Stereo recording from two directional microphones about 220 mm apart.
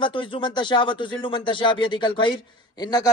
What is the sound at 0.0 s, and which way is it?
Speech, 20° left (ahead or behind).